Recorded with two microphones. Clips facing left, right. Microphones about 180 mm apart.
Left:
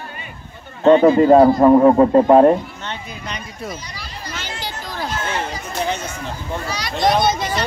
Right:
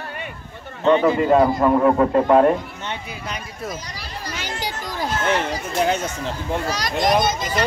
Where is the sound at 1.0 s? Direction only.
35° left (ahead or behind).